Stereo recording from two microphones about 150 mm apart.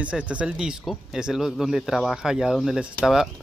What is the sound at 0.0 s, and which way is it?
Speech, 10° right (ahead or behind).